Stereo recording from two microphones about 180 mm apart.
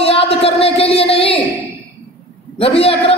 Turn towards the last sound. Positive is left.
turn(degrees=30)  # may be behind; listen again after turning